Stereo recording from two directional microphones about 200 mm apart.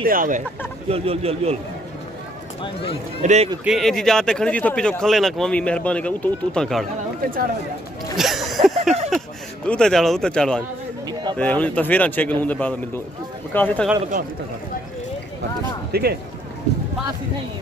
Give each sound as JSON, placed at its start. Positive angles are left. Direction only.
{"t": 0.0, "sound": "speech", "side_deg": -45}
{"t": 0.8, "sound": "speech", "side_deg": -30}
{"t": 2.6, "sound": "speech", "side_deg": 25}
{"t": 3.2, "sound": "speech", "side_deg": -35}
{"t": 3.6, "sound": "speech", "side_deg": 0}
{"t": 8.2, "sound": "a sound", "side_deg": 0}
{"t": 9.7, "sound": "a man's voice", "side_deg": 5}
{"t": 15.9, "sound": "speech", "side_deg": -50}